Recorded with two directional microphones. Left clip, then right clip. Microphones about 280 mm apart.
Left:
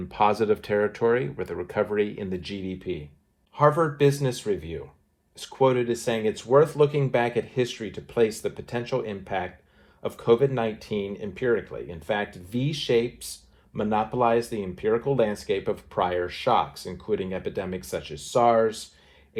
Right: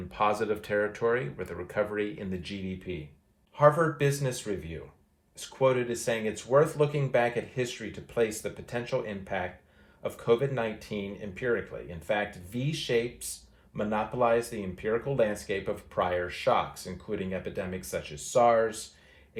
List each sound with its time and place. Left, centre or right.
0.2 s speech: centre
4.4 s speech: centre